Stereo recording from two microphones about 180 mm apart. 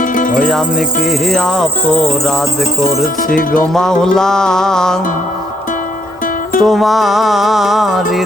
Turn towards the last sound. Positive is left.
turn(degrees=0)  # may be behind; listen again after turning